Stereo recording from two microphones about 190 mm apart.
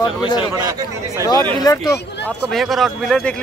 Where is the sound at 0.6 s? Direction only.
15° right (ahead or behind).